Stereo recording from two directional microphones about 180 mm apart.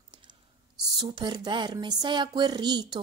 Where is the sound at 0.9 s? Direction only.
25° right (ahead or behind).